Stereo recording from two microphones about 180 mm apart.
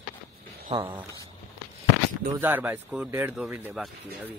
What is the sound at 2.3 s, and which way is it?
Speech, 10° right (ahead or behind).